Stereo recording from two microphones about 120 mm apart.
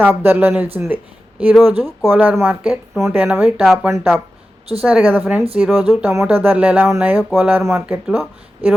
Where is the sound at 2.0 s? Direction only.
15° right (ahead or behind).